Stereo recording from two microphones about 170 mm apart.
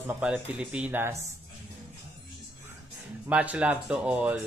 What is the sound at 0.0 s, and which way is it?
Speech, 10° right (ahead or behind).